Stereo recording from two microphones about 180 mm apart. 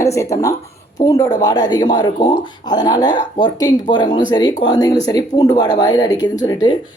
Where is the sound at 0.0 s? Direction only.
15° left (ahead or behind).